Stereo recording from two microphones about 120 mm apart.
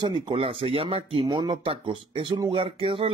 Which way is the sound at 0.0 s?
45° right (ahead or behind).